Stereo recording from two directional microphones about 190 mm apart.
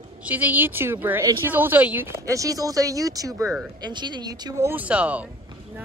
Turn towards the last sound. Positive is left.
turn(degrees=-5)  # may be behind; listen again after turning